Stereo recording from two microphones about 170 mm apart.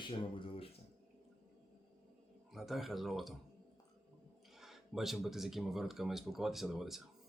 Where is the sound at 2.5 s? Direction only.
Centre (ahead or behind).